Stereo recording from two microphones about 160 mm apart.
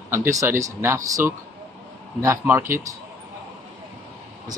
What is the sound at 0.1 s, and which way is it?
Speech, 20° right (ahead or behind).